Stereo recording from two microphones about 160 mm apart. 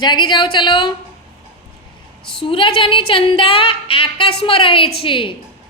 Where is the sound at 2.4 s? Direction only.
35° left (ahead or behind).